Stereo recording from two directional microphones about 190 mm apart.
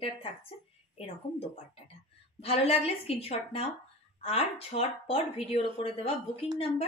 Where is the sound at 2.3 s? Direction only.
30° left (ahead or behind).